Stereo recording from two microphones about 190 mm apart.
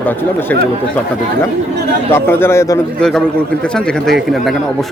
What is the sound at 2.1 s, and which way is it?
A man's voice, 10° left (ahead or behind).